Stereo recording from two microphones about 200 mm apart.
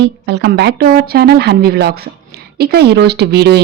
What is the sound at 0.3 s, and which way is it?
A woman's voice, 55° right (ahead or behind).